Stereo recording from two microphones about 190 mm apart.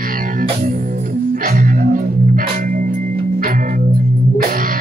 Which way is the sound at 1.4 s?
45° right (ahead or behind).